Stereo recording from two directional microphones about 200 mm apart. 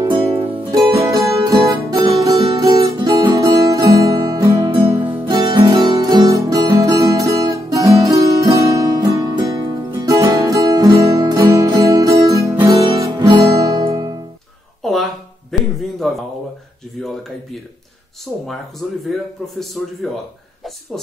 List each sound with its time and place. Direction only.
0.0 s music: 25° right (ahead or behind)
0.9 s music: 20° right (ahead or behind)
2.6 s guitar: 15° right (ahead or behind)
5.1 s music: 25° right (ahead or behind)
14.8 s a sound: centre (ahead or behind)
18.3 s a man's voice: centre (ahead or behind)